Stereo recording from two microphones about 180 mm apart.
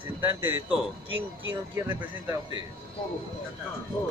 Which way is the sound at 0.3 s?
10° right (ahead or behind).